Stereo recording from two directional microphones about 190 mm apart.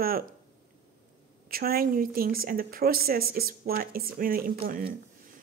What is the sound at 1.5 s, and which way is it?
A woman's voice, 50° right (ahead or behind).